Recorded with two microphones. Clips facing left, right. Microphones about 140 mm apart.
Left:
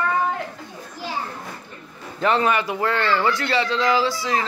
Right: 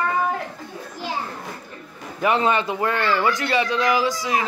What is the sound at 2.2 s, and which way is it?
Speech, 15° right (ahead or behind).